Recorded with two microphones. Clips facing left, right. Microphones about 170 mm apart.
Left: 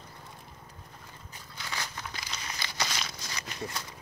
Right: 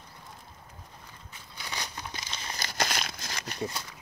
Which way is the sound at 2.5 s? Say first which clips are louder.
Right 4 dB; 45° right (ahead or behind).